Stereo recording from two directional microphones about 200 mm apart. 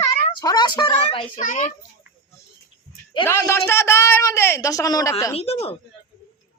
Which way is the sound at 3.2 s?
15° left (ahead or behind).